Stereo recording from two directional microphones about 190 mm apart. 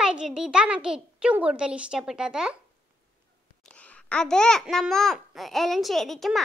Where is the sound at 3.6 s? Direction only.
5° left (ahead or behind).